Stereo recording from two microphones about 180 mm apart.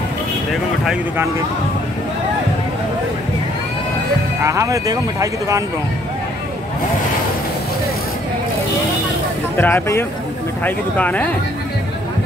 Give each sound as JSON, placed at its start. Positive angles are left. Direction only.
{"t": 4.4, "sound": "speech", "side_deg": -15}
{"t": 9.6, "sound": "speech", "side_deg": 10}